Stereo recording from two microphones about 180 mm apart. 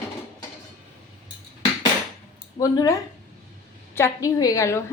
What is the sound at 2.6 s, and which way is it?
A woman's voice, 20° left (ahead or behind).